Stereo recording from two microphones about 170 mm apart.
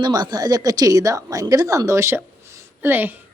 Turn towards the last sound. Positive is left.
turn(degrees=-10)  # may be behind; listen again after turning